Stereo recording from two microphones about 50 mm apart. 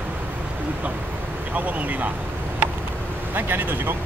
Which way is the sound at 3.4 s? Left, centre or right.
Right.